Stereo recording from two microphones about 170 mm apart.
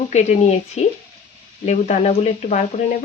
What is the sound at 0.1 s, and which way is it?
Speech, 40° left (ahead or behind).